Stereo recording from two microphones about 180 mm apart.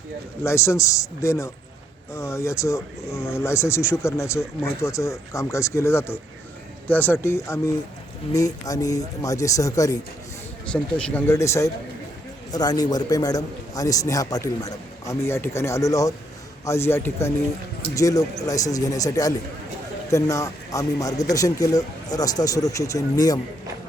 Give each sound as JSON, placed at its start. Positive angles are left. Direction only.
{"t": 0.4, "sound": "a man's voice", "side_deg": 15}
{"t": 10.7, "sound": "a man's voice", "side_deg": 5}